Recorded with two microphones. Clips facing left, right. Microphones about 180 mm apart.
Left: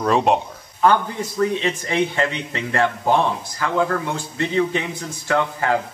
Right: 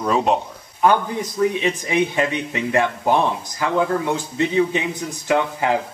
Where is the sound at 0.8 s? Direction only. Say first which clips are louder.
Even; 15° right (ahead or behind).